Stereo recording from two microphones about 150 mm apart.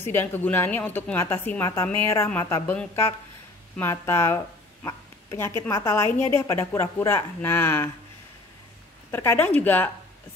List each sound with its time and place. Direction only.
0.0 s a woman's voice: 15° left (ahead or behind)
3.9 s a woman's voice: 20° left (ahead or behind)
9.1 s a woman's voice: 15° left (ahead or behind)